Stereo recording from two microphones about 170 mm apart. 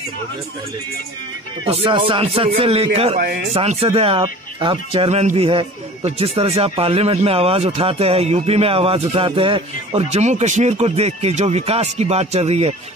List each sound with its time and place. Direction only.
1.7 s speech: 30° right (ahead or behind)